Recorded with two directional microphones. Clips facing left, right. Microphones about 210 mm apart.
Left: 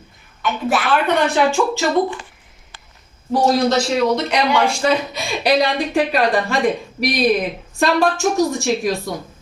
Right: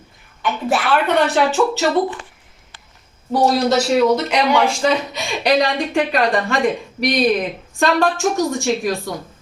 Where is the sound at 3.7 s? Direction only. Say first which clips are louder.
Right 2 dB; 5° right (ahead or behind).